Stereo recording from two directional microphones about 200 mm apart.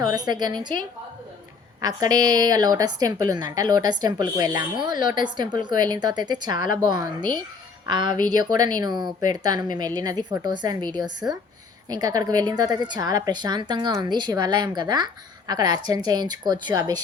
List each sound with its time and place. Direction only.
0.1 s speech: 20° right (ahead or behind)
1.8 s speech: 20° right (ahead or behind)